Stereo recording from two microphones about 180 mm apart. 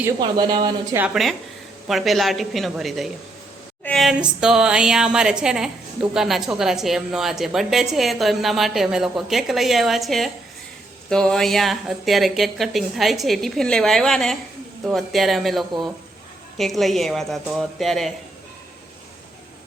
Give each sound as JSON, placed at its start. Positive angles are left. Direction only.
{"t": 0.2, "sound": "speech", "side_deg": -25}
{"t": 0.9, "sound": "speech", "side_deg": -5}